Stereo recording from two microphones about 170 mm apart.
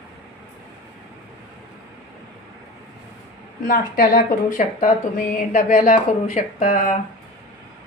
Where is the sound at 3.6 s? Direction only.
60° left (ahead or behind).